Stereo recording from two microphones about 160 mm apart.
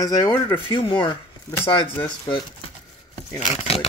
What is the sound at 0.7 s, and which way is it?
Speech, 30° left (ahead or behind).